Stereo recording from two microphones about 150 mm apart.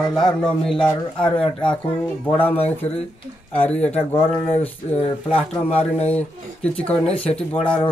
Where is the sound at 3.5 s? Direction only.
10° left (ahead or behind).